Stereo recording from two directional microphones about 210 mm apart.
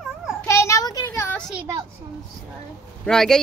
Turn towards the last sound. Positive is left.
turn(degrees=5)  # may be behind; listen again after turning